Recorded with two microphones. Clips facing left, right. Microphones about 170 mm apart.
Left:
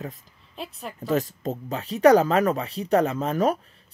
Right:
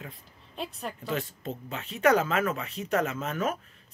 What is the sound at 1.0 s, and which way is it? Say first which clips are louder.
Speech: left 9 dB; 40° left (ahead or behind).